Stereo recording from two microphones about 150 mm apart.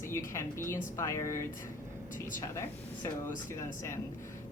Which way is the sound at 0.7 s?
20° left (ahead or behind).